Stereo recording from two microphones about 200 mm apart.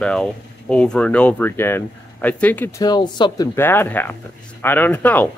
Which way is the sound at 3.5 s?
10° left (ahead or behind).